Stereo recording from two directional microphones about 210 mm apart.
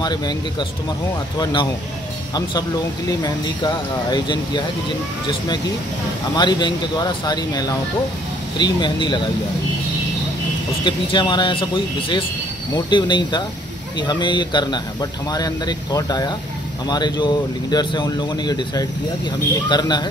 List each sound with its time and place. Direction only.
0.0 s speech: 20° left (ahead or behind)
3.1 s speech: 20° left (ahead or behind)
6.3 s speech: 20° left (ahead or behind)
10.8 s speech: 20° left (ahead or behind)